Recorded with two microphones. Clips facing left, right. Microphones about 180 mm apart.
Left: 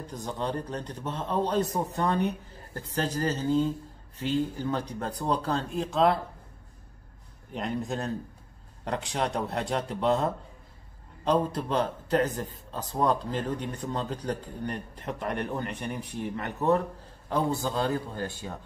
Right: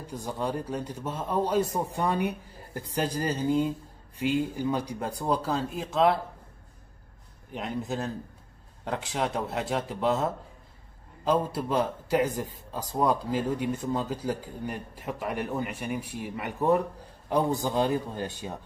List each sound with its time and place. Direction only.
0.0 s a man's voice: 10° right (ahead or behind)
7.5 s a man's voice: centre (ahead or behind); by 18.6 s 15° right (ahead or behind)